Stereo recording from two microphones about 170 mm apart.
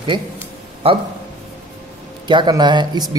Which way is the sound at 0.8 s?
35° right (ahead or behind).